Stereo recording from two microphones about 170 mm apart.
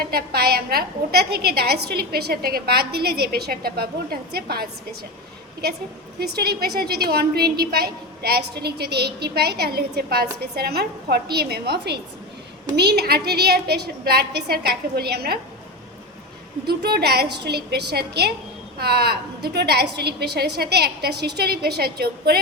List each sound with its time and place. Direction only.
0.1 s a woman's voice: 65° right (ahead or behind)
6.1 s a woman's voice: 70° right (ahead or behind)
16.6 s a woman's voice: 70° right (ahead or behind)